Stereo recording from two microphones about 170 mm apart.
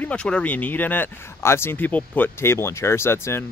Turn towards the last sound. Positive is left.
turn(degrees=15)  # may be behind; listen again after turning